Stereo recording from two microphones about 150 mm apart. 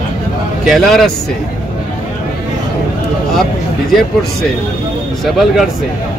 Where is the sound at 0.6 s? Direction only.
Centre (ahead or behind).